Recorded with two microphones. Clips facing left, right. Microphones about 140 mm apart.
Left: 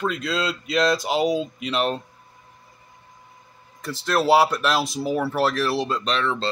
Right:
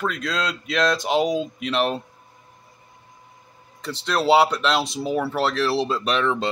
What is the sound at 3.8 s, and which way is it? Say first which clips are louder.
Speech: even; 5° left (ahead or behind).